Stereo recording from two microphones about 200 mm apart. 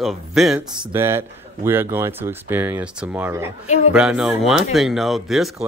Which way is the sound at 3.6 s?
35° left (ahead or behind).